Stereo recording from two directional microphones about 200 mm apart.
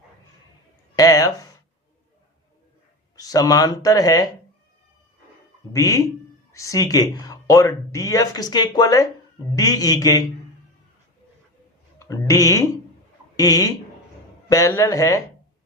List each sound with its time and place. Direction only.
0.9 s a sound: 20° left (ahead or behind)
3.2 s speech: 20° left (ahead or behind)
5.7 s speech: 15° left (ahead or behind)
11.9 s speech: 15° left (ahead or behind)